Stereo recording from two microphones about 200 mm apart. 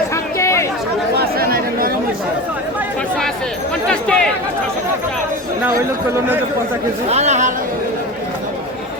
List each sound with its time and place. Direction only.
0.1 s chatter: 15° left (ahead or behind)
1.1 s chatter: 50° right (ahead or behind)
3.8 s a sound: 5° left (ahead or behind)
7.1 s speech: 35° right (ahead or behind)